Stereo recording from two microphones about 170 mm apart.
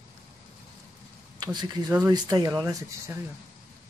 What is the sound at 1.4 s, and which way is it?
Speech, 25° right (ahead or behind).